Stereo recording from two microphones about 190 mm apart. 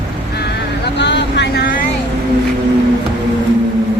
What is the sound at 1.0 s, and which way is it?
Speech, 65° left (ahead or behind).